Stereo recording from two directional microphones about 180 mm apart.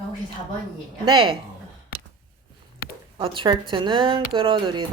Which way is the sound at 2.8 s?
55° left (ahead or behind).